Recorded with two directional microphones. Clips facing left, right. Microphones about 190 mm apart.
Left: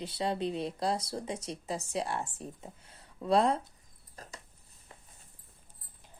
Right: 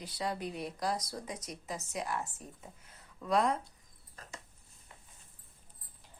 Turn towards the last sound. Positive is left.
turn(degrees=35)  # may be behind; listen again after turning